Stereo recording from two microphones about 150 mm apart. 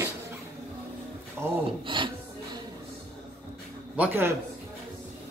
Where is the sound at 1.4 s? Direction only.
15° right (ahead or behind).